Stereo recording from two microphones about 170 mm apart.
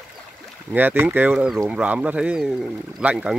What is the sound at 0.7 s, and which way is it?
Speech, 10° right (ahead or behind).